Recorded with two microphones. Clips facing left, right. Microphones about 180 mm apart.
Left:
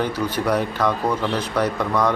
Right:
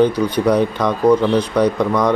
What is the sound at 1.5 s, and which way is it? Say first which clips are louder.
Speech: right 5 dB; 15° right (ahead or behind).